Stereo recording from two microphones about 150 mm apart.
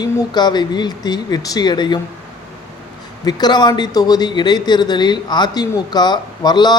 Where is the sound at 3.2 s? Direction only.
30° left (ahead or behind).